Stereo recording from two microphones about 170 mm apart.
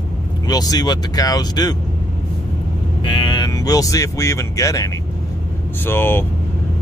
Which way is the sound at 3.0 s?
30° left (ahead or behind).